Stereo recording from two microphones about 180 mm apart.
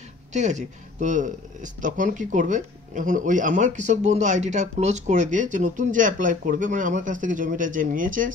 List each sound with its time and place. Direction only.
0.3 s speech: 40° right (ahead or behind)